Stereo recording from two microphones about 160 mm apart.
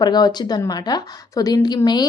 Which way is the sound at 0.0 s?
25° left (ahead or behind).